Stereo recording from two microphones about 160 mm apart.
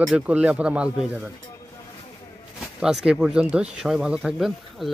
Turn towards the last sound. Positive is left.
turn(degrees=-5)  # may be behind; listen again after turning